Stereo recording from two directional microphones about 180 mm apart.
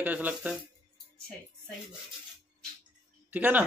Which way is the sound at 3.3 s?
10° right (ahead or behind).